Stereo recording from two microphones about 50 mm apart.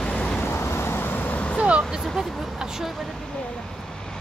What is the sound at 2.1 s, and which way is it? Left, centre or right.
Speech, centre.